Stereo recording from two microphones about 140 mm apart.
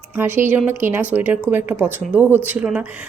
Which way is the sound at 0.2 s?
15° right (ahead or behind).